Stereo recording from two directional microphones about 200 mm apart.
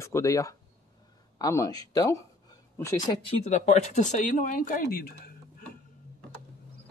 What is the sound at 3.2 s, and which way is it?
Speech, 30° left (ahead or behind).